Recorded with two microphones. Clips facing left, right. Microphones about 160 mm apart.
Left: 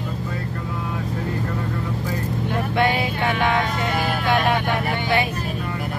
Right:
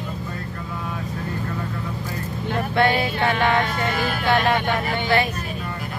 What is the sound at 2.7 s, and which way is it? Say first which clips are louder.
Vehicle: right 2 dB; 10° left (ahead or behind).